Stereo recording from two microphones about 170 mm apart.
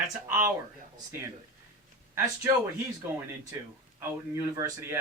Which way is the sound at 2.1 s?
20° right (ahead or behind).